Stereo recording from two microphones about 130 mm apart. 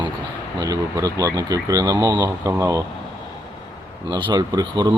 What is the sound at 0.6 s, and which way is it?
Speech, 25° right (ahead or behind).